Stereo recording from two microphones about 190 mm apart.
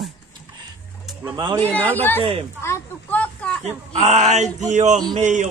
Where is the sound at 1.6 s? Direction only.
10° left (ahead or behind).